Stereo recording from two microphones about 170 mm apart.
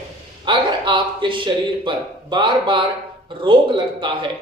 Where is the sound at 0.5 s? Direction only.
30° right (ahead or behind).